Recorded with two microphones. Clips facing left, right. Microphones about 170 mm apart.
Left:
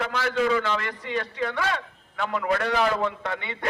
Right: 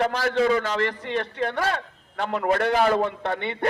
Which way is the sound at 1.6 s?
40° right (ahead or behind).